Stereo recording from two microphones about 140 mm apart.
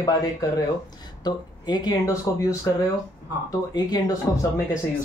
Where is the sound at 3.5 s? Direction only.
25° left (ahead or behind).